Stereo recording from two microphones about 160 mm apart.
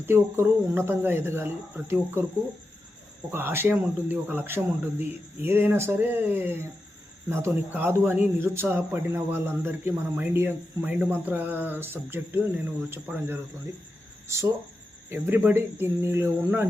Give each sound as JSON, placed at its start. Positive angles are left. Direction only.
{"t": 0.0, "sound": "speech", "side_deg": -15}
{"t": 3.3, "sound": "speech", "side_deg": -15}
{"t": 15.1, "sound": "speech", "side_deg": -15}